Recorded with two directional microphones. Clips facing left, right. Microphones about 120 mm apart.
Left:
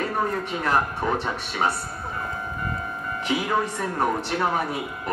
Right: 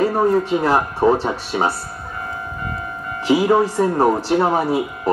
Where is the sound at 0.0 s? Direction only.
30° right (ahead or behind).